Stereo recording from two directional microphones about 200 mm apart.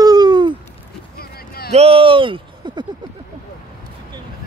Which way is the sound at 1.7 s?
30° right (ahead or behind).